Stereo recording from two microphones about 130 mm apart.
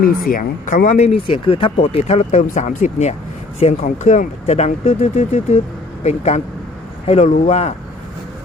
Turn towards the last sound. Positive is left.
turn(degrees=55)  # may be behind; listen again after turning